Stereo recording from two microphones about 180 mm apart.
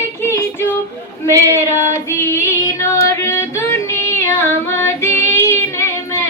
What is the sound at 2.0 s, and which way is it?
Music, 15° left (ahead or behind).